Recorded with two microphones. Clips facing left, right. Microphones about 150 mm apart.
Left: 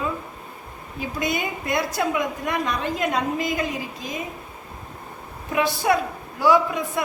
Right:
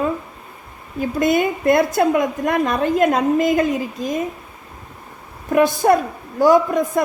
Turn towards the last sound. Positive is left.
turn(degrees=-45)  # may be behind; listen again after turning